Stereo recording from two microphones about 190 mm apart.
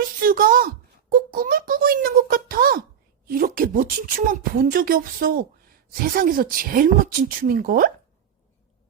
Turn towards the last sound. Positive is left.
turn(degrees=-50)  # may be behind; listen again after turning